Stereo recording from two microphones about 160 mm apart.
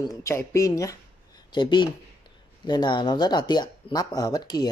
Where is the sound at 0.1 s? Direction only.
20° left (ahead or behind).